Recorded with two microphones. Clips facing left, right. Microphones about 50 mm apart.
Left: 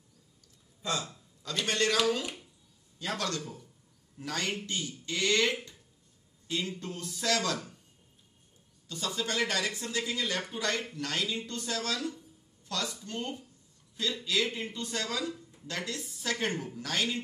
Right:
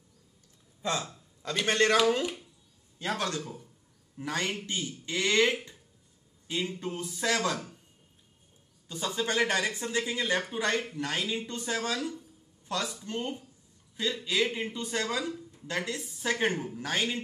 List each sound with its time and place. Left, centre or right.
0.8 s speech: right
3.1 s speech: right
8.8 s speech: right